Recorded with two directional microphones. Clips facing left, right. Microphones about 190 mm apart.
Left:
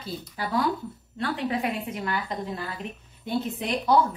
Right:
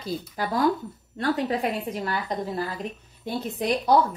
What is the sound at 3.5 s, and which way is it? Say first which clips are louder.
Speech: right 3 dB; 40° right (ahead or behind).